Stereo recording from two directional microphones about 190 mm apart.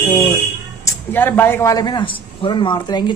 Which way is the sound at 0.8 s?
10° left (ahead or behind).